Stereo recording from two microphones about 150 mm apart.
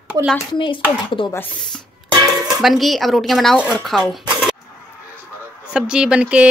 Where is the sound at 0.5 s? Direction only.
35° left (ahead or behind).